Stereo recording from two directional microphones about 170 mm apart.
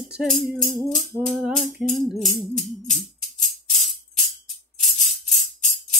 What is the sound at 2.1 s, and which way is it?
Music, 45° left (ahead or behind).